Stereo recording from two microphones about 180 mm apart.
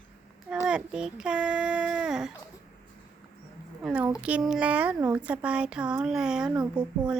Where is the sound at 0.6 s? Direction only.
5° right (ahead or behind).